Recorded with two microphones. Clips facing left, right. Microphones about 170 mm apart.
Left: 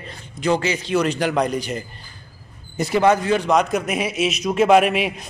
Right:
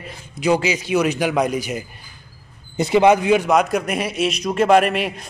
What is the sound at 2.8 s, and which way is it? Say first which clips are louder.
Speech: right 3 dB; 20° right (ahead or behind).